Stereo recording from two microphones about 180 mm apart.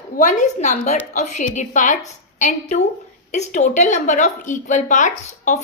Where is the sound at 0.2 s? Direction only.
45° left (ahead or behind).